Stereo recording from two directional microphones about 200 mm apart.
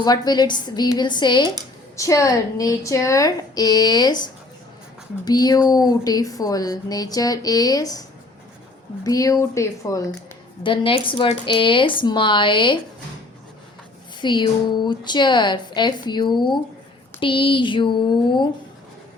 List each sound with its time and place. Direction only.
0.0 s a woman's voice: 20° left (ahead or behind)
9.0 s a woman's voice: 15° left (ahead or behind)
14.2 s speech: 20° left (ahead or behind)